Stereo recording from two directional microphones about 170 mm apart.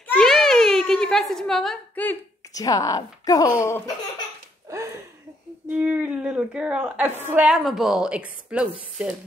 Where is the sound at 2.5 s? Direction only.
20° left (ahead or behind).